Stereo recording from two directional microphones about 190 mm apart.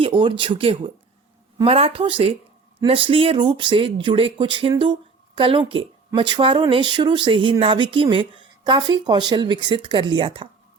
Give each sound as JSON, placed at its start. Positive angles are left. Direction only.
{"t": 0.0, "sound": "speech", "side_deg": -25}
{"t": 1.5, "sound": "speech", "side_deg": -30}